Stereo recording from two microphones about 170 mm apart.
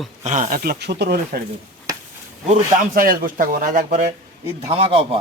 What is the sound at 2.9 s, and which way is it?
Speech, 55° right (ahead or behind).